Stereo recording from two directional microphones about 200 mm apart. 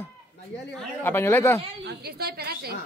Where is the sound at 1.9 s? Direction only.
50° right (ahead or behind).